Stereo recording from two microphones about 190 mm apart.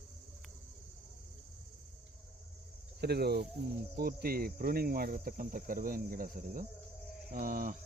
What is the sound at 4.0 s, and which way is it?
Cricket, 55° right (ahead or behind).